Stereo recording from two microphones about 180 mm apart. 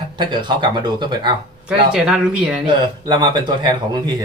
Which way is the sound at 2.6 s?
25° right (ahead or behind).